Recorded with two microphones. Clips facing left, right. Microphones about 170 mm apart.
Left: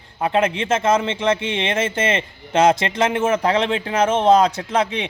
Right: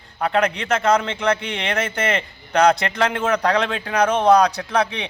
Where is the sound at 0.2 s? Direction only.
20° left (ahead or behind).